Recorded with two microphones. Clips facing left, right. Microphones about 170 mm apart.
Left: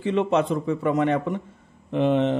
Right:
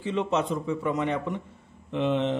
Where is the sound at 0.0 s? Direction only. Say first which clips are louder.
Left 5 dB; 60° left (ahead or behind).